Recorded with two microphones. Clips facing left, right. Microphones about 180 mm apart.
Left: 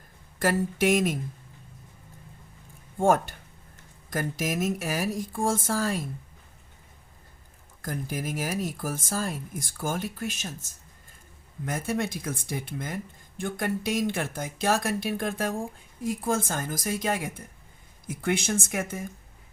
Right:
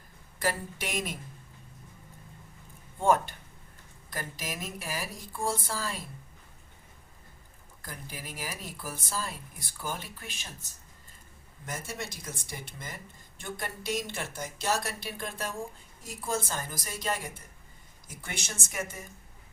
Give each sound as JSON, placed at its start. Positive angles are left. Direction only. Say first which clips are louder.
{"t": 0.3, "sound": "speech", "louder": "left 7 dB", "side_deg": 50}
{"t": 3.0, "sound": "speech", "louder": "left 3 dB", "side_deg": 45}
{"t": 7.8, "sound": "speech", "louder": "left 11 dB", "side_deg": 45}
{"t": 11.6, "sound": "speech", "louder": "left 9 dB", "side_deg": 55}